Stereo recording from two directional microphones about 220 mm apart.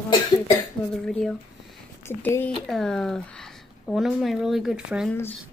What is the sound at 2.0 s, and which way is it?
Speech, 10° left (ahead or behind).